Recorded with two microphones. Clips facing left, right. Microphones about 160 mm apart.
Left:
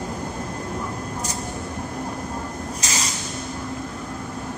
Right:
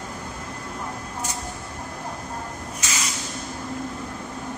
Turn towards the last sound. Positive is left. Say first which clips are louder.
# left 2 dB
turn(degrees=35)  # may be behind; listen again after turning